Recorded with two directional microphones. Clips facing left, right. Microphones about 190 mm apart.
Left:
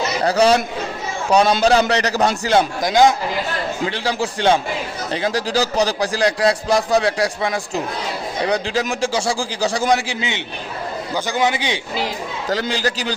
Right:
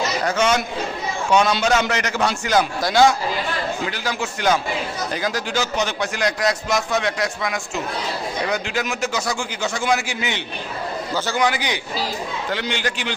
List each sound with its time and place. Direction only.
0.3 s a man's voice: 35° left (ahead or behind)
2.8 s speech: 15° left (ahead or behind)
3.8 s a man's voice: 30° left (ahead or behind)
12.5 s a man's voice: 35° left (ahead or behind)